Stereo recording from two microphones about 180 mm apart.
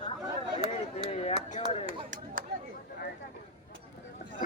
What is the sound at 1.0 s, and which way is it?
Chop, 35° left (ahead or behind).